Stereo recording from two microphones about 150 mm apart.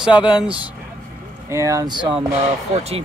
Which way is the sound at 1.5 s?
20° right (ahead or behind).